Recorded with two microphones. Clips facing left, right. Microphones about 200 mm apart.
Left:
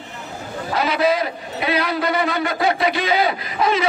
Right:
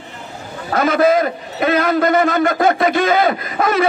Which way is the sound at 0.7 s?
50° right (ahead or behind).